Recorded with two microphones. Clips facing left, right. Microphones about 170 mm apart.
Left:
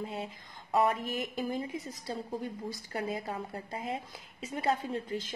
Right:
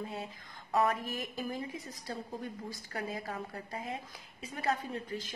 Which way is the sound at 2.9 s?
25° left (ahead or behind).